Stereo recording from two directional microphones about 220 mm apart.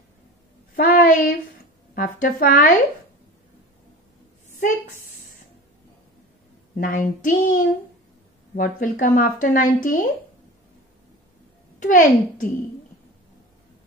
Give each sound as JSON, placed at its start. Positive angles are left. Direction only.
{"t": 0.7, "sound": "child singing", "side_deg": 40}
{"t": 2.0, "sound": "a woman's voice", "side_deg": 40}
{"t": 4.6, "sound": "a sound", "side_deg": 35}
{"t": 6.8, "sound": "a woman's voice", "side_deg": 40}
{"t": 11.8, "sound": "a woman's voice", "side_deg": 35}